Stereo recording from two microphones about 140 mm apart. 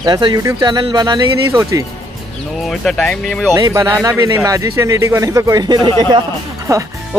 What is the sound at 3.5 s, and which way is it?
Speech, 20° right (ahead or behind).